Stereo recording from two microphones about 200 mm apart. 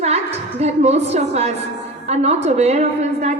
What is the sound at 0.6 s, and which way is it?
A woman's voice, 35° right (ahead or behind).